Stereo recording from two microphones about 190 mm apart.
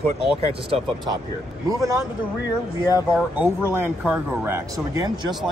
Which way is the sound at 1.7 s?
20° right (ahead or behind).